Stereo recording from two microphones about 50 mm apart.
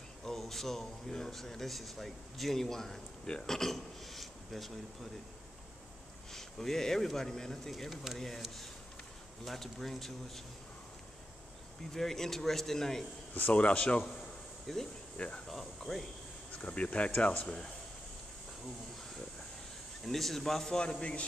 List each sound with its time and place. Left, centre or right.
0.2 s speech: centre
6.3 s speech: centre
9.4 s speech: centre
11.9 s speech: centre
13.3 s speech: left
14.7 s speech: centre
15.1 s speech: left
15.4 s speech: centre
16.6 s speech: left
20.1 s speech: centre; by 21.3 s left